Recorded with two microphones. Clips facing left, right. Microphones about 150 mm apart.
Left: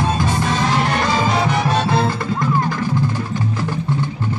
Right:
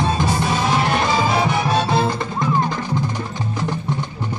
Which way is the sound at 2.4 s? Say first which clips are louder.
Even; 20° right (ahead or behind).